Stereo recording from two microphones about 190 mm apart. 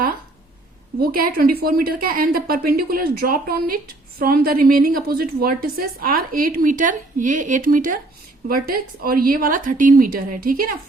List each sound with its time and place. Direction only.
1.0 s a woman's voice: 50° right (ahead or behind)